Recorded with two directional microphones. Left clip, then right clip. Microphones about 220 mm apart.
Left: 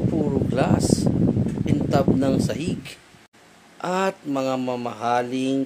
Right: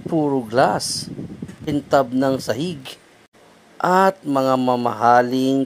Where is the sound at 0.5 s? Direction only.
25° right (ahead or behind).